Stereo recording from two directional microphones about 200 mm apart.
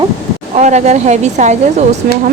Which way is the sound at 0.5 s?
35° right (ahead or behind).